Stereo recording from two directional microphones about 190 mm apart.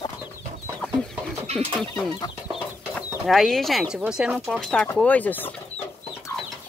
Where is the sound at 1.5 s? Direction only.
35° right (ahead or behind).